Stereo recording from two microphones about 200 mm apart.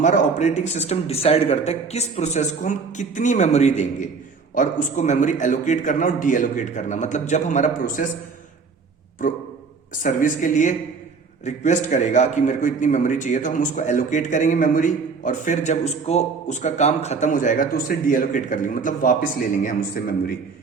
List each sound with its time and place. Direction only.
0.0 s a man's voice: 35° left (ahead or behind)
9.2 s a man's voice: 40° left (ahead or behind)